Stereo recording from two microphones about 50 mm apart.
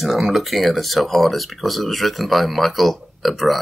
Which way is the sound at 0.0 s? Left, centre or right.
Centre.